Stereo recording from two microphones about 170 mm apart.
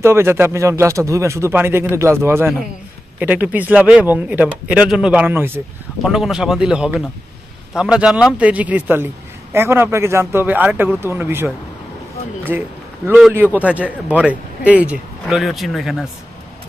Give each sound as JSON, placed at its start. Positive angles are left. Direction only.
{"t": 0.0, "sound": "a man's voice", "side_deg": -15}